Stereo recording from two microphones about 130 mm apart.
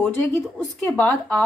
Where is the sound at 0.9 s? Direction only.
10° left (ahead or behind).